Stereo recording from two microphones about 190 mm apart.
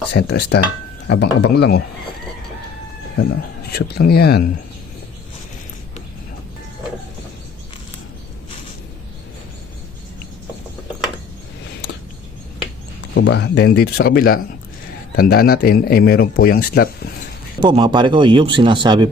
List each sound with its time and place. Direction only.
0.1 s speech: 60° left (ahead or behind)
3.7 s speech: 55° left (ahead or behind)
13.1 s speech: 65° left (ahead or behind)
17.6 s speech: 25° right (ahead or behind)